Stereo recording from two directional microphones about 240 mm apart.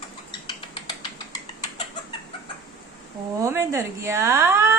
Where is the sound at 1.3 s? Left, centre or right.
Centre.